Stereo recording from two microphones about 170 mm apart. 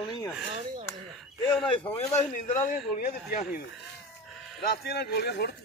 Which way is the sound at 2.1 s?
50° left (ahead or behind).